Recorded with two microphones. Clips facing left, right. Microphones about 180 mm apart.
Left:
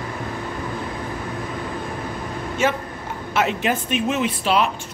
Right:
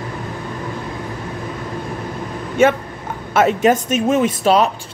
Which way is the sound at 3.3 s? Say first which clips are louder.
Right 7 dB; 45° right (ahead or behind).